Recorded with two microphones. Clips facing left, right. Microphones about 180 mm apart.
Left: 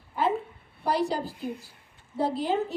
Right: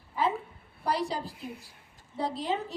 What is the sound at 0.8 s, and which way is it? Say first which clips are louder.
A woman's voice: left 4 dB; centre (ahead or behind).